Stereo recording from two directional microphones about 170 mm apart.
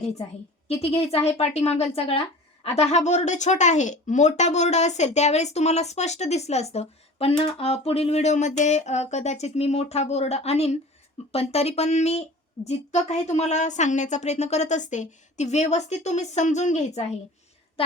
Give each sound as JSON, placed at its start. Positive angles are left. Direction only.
{"t": 0.7, "sound": "speech", "side_deg": 35}